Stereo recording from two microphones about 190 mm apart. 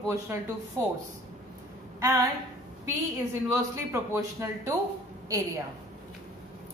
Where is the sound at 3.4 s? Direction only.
15° right (ahead or behind).